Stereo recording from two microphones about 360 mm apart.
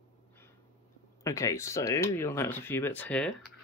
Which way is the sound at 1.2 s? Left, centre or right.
Centre.